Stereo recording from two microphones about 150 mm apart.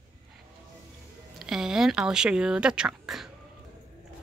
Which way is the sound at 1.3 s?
5° right (ahead or behind).